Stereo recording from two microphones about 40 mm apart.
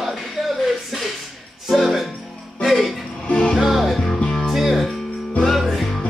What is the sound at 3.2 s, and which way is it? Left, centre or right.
Music, left.